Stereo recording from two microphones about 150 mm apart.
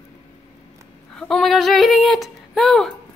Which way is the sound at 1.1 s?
5° left (ahead or behind).